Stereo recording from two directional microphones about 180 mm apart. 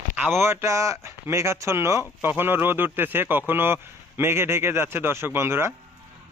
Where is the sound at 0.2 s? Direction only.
10° right (ahead or behind).